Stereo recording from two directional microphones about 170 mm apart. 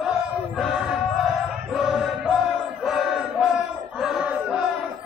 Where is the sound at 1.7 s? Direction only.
5° right (ahead or behind).